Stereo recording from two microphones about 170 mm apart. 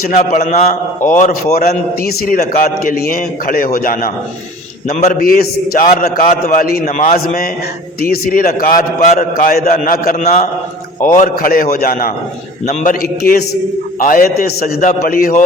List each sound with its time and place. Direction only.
0.0 s a man's voice: 50° left (ahead or behind)
10.2 s a man's voice: 45° left (ahead or behind)